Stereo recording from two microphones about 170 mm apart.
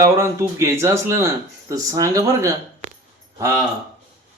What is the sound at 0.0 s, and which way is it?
Speech, 15° right (ahead or behind).